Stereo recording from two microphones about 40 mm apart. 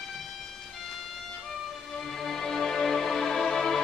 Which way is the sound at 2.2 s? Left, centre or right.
Centre.